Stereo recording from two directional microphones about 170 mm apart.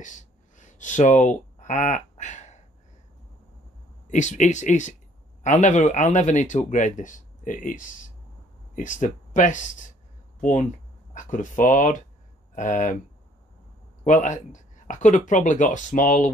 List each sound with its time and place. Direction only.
0.0 s a sound: 45° left (ahead or behind)
4.1 s speech: 45° left (ahead or behind)
14.0 s speech: 50° left (ahead or behind)